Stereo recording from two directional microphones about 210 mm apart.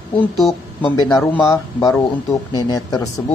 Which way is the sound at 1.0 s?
20° left (ahead or behind).